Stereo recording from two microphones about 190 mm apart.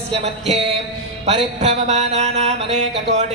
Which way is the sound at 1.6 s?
35° right (ahead or behind).